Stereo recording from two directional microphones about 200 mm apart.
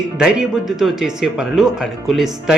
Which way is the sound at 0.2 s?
5° right (ahead or behind).